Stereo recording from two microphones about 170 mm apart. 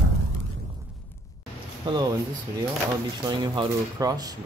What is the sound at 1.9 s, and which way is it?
Speech, 25° right (ahead or behind).